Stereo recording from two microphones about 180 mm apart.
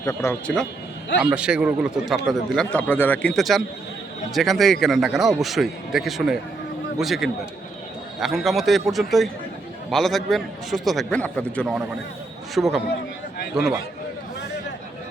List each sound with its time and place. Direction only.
0.0 s speech: 15° left (ahead or behind)
1.2 s speech: 5° right (ahead or behind)